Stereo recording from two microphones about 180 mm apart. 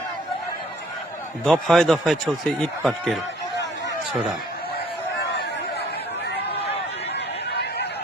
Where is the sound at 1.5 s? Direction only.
Centre (ahead or behind).